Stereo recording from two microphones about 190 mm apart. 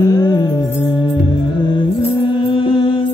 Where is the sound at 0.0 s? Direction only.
20° left (ahead or behind).